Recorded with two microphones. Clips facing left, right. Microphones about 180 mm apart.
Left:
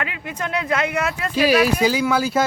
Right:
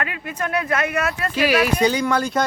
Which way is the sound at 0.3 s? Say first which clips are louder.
Even; 15° left (ahead or behind).